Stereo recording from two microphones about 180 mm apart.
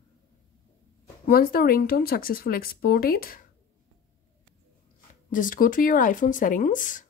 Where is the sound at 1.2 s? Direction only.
55° left (ahead or behind).